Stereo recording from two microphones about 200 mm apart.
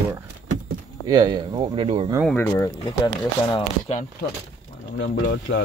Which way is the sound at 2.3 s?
10° left (ahead or behind).